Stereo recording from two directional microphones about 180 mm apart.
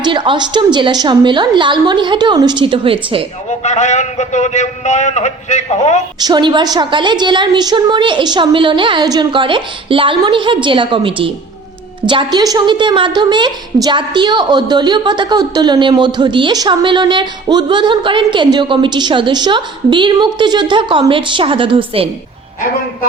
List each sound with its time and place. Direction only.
0.0 s a woman's voice: 25° right (ahead or behind)
3.6 s a man's voice: 40° left (ahead or behind)
6.1 s a woman's voice: 25° right (ahead or behind)